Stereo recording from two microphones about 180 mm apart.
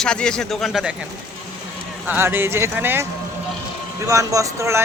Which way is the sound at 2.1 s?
10° right (ahead or behind).